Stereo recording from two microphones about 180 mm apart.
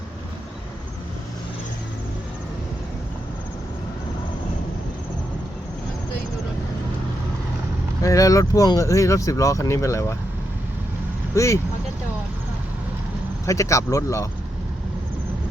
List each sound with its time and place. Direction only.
8.0 s speech: 20° left (ahead or behind)
11.3 s speech: 15° left (ahead or behind)
13.4 s speech: 15° left (ahead or behind)